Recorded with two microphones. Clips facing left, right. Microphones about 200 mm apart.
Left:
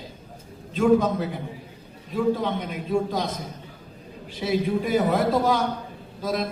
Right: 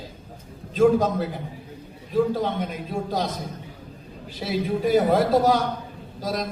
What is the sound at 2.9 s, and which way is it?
Speech, 40° right (ahead or behind).